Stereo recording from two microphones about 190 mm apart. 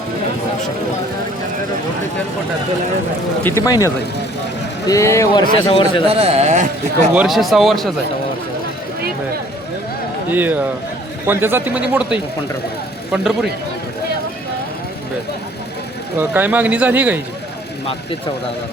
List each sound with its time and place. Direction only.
3.4 s a man's voice: 15° left (ahead or behind)
6.1 s speech: 30° right (ahead or behind)
7.1 s speech: 5° right (ahead or behind)
10.2 s speech: 10° right (ahead or behind)
16.1 s speech: 10° right (ahead or behind)